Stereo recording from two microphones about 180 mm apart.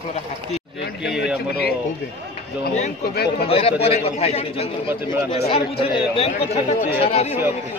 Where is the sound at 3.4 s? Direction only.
35° left (ahead or behind).